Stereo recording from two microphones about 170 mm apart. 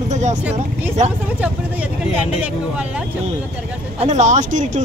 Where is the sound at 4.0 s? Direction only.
40° right (ahead or behind).